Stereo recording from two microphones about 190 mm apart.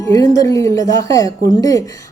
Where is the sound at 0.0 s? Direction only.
20° left (ahead or behind).